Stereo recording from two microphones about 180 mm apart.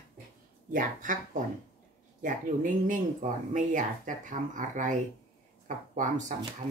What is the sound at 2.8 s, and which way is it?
Speech, 45° right (ahead or behind).